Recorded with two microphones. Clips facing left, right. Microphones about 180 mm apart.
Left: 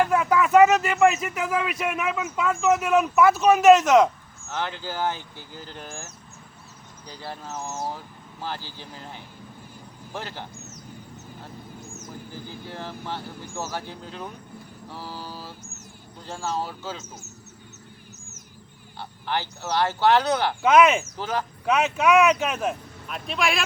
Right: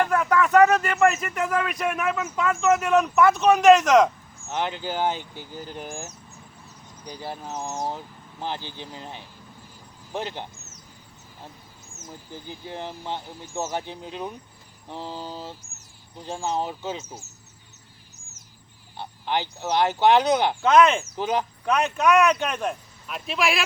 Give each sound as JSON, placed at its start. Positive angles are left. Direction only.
{"t": 0.0, "sound": "speech", "side_deg": 10}
{"t": 4.4, "sound": "speech", "side_deg": -15}
{"t": 11.9, "sound": "speech", "side_deg": -20}
{"t": 18.9, "sound": "speech", "side_deg": -15}
{"t": 20.6, "sound": "speech", "side_deg": 10}
{"t": 21.2, "sound": "speech", "side_deg": -15}
{"t": 21.7, "sound": "speech", "side_deg": 5}